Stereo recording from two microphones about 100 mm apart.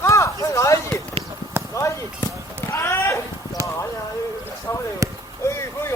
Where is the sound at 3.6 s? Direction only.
30° right (ahead or behind).